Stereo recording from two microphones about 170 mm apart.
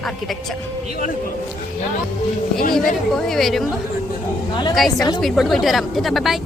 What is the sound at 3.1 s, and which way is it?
Speech, centre (ahead or behind).